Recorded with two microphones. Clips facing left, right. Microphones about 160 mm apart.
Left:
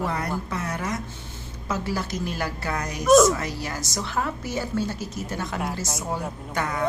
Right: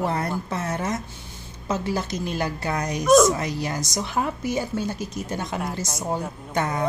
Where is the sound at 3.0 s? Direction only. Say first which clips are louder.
Even; centre (ahead or behind).